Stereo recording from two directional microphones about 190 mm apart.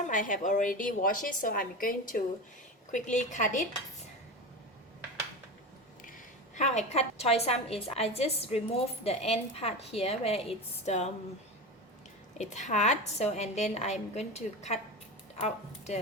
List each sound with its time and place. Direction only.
0.1 s a woman's voice: 45° left (ahead or behind)
6.1 s a woman's voice: 40° left (ahead or behind)
12.4 s a woman's voice: 40° left (ahead or behind)